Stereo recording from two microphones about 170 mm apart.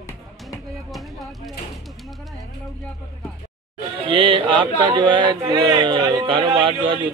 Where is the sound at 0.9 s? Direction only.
Centre (ahead or behind).